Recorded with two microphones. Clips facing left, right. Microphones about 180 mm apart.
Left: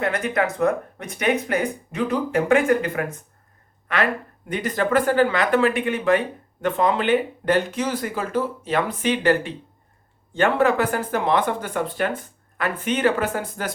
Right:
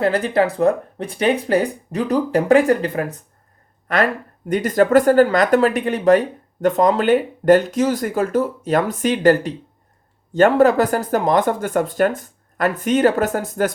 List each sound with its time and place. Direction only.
0.0 s speech: 30° right (ahead or behind)